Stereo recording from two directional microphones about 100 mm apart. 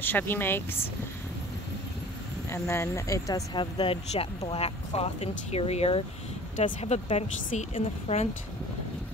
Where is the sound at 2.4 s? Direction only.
25° left (ahead or behind).